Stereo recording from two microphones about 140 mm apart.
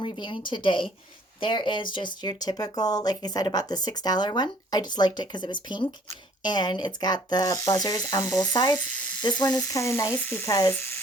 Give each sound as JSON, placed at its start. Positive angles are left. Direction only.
{"t": 0.0, "sound": "a woman's voice", "side_deg": 35}